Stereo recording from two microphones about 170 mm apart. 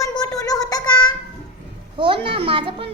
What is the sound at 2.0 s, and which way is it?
Speech, 30° right (ahead or behind).